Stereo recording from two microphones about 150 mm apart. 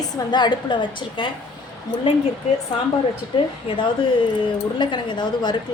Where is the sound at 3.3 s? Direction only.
30° left (ahead or behind).